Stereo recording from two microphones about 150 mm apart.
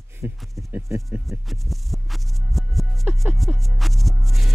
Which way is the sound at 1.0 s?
Centre (ahead or behind).